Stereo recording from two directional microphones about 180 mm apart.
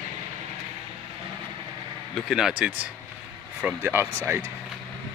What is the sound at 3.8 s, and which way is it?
Speech, 10° right (ahead or behind).